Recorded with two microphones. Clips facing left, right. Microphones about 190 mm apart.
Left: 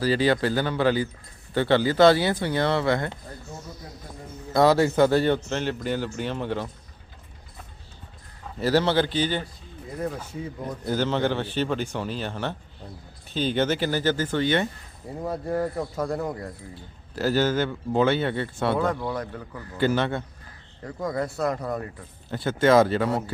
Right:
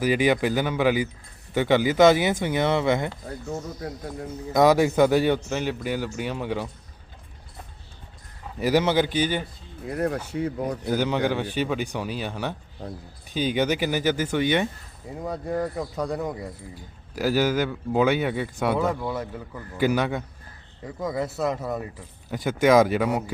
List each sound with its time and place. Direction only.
0.0 s a man's voice: 15° right (ahead or behind)
4.5 s a man's voice: 15° right (ahead or behind)
8.5 s a man's voice: 15° right (ahead or behind)
9.8 s speech: 70° right (ahead or behind)
10.8 s a man's voice: 10° right (ahead or behind)
15.2 s a man's voice: centre (ahead or behind); by 23.3 s 15° right (ahead or behind)